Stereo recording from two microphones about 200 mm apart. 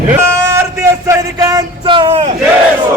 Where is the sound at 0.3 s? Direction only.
15° right (ahead or behind).